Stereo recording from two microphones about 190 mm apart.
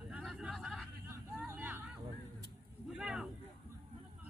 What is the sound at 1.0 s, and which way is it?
Hubbub, 10° right (ahead or behind).